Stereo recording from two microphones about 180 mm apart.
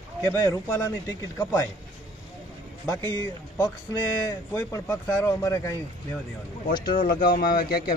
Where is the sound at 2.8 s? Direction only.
15° left (ahead or behind).